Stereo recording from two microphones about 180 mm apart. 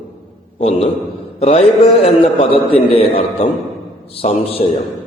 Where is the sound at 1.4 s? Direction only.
35° left (ahead or behind).